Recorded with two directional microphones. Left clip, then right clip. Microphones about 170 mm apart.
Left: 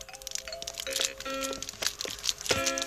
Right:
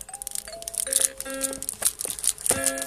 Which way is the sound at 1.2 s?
15° left (ahead or behind).